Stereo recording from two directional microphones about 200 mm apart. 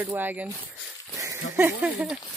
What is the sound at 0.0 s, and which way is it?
Speech, 10° right (ahead or behind).